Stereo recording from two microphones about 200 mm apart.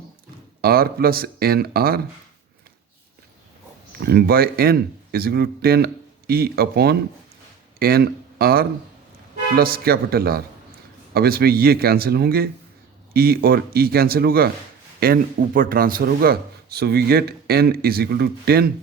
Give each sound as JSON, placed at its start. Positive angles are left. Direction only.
{"t": 0.6, "sound": "speech", "side_deg": -50}
{"t": 4.0, "sound": "speech", "side_deg": -50}